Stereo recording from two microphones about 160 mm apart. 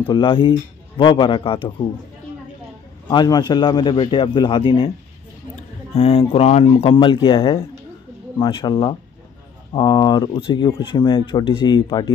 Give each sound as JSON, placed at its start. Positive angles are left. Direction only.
{"t": 0.0, "sound": "speech", "side_deg": 35}
{"t": 3.1, "sound": "a man's voice", "side_deg": 25}
{"t": 5.9, "sound": "a man's voice", "side_deg": 40}